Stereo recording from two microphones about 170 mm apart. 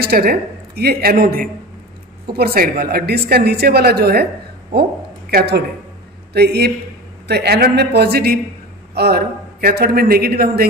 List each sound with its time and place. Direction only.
0.0 s a man's voice: 65° right (ahead or behind)
5.3 s a woman's voice: 80° right